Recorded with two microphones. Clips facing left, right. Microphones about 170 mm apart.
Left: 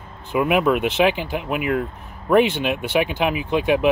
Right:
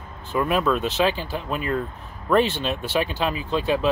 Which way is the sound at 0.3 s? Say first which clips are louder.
Left 3 dB; 15° left (ahead or behind).